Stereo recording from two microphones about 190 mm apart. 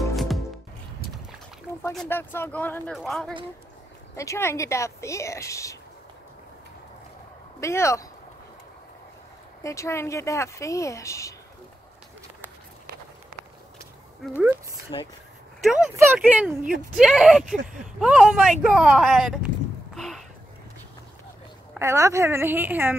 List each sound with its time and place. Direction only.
0.1 s music: centre (ahead or behind)
2.0 s speech: 10° left (ahead or behind)
4.2 s speech: 15° left (ahead or behind)
7.6 s speech: 15° left (ahead or behind)
9.6 s speech: 15° left (ahead or behind)
14.9 s speech: 25° left (ahead or behind)
15.6 s speech: centre (ahead or behind)
21.7 s a woman's voice: 15° right (ahead or behind)